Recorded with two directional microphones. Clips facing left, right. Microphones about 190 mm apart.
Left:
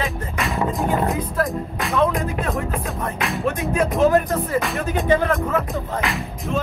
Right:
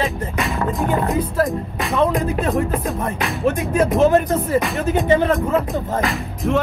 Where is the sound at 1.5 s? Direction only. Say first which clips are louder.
Right 1 dB; centre (ahead or behind).